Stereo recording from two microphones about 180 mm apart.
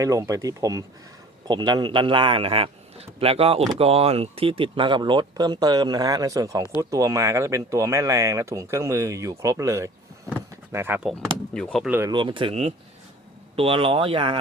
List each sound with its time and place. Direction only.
0.0 s speech: 20° right (ahead or behind)
11.1 s speech: 5° left (ahead or behind)
11.9 s speech: 15° right (ahead or behind)
12.1 s speech: 25° right (ahead or behind)